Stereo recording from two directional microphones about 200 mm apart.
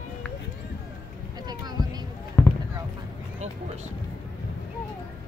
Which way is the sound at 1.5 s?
20° right (ahead or behind).